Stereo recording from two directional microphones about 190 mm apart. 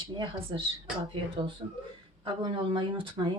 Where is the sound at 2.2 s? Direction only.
25° right (ahead or behind).